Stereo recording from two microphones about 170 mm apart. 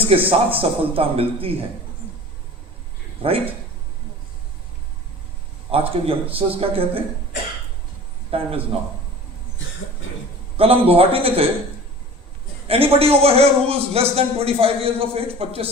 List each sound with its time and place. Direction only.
0.3 s a man's voice: 35° right (ahead or behind)
3.2 s a man's voice: 35° right (ahead or behind)
5.7 s a man's voice: 35° right (ahead or behind)
8.3 s a man's voice: 35° right (ahead or behind)
10.6 s a man's voice: 35° right (ahead or behind)
12.6 s a man's voice: 35° right (ahead or behind)